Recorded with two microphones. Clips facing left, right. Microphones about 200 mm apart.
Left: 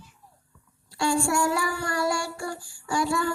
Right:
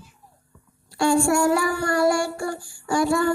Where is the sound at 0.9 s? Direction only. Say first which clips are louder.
Right 5 dB; 50° right (ahead or behind).